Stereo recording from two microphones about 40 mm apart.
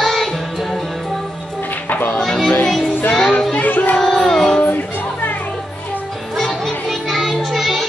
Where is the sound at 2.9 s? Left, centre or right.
Left.